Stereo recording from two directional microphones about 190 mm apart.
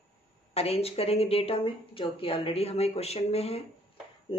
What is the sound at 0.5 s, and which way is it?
Speech, 30° left (ahead or behind).